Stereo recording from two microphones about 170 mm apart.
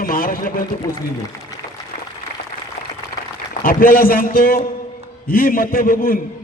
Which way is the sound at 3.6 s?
55° left (ahead or behind).